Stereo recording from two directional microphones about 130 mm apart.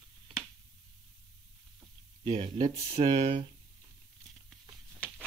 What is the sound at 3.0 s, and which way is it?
Speech, 35° right (ahead or behind).